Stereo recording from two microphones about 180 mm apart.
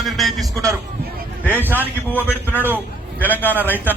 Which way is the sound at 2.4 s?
10° left (ahead or behind).